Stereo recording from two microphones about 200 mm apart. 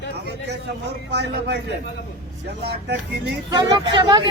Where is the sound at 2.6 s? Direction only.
55° right (ahead or behind).